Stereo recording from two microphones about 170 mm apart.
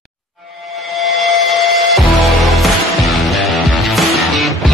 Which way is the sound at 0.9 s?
Centre (ahead or behind).